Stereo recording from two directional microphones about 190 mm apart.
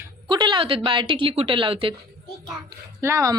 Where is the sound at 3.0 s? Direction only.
15° right (ahead or behind).